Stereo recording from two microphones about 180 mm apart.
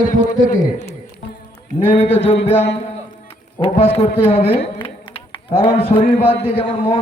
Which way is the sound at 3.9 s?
35° left (ahead or behind).